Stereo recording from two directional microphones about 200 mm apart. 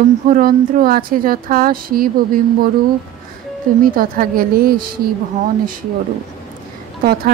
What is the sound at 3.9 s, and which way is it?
Speech, 45° right (ahead or behind).